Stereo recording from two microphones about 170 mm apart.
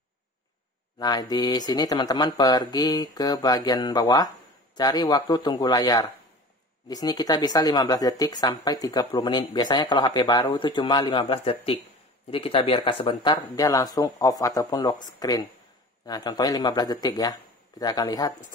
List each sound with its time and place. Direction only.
0.9 s speech: 25° left (ahead or behind)